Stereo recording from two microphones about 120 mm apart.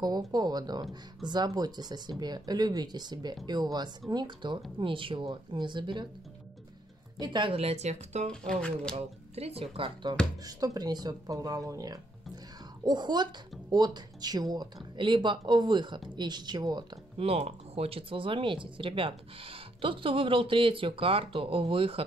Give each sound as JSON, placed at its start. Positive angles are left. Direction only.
{"t": 0.0, "sound": "speech", "side_deg": -35}
{"t": 7.2, "sound": "speech", "side_deg": -45}
{"t": 8.3, "sound": "speech", "side_deg": 10}
{"t": 8.9, "sound": "speech", "side_deg": -60}
{"t": 10.4, "sound": "speech", "side_deg": -30}
{"t": 17.2, "sound": "speech", "side_deg": -60}